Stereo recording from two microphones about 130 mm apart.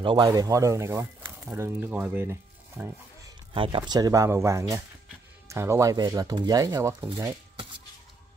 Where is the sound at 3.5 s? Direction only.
40° right (ahead or behind).